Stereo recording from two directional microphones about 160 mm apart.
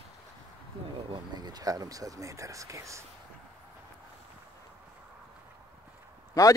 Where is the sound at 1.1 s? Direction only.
25° right (ahead or behind).